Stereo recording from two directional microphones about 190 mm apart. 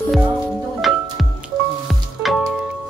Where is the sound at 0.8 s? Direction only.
Centre (ahead or behind).